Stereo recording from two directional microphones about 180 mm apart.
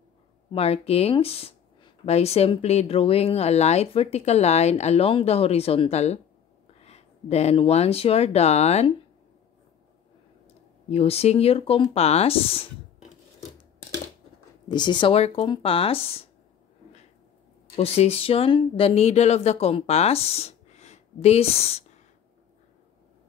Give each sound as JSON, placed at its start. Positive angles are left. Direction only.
{"t": 0.5, "sound": "speech", "side_deg": 35}
{"t": 10.9, "sound": "speech", "side_deg": 35}
{"t": 14.7, "sound": "speech", "side_deg": 25}
{"t": 17.7, "sound": "speech", "side_deg": 35}